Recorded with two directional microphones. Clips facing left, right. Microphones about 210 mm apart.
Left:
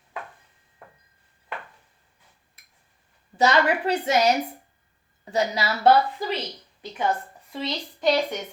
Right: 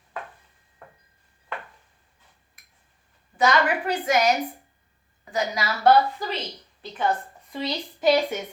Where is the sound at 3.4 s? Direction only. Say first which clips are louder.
Left 1 dB; 25° left (ahead or behind).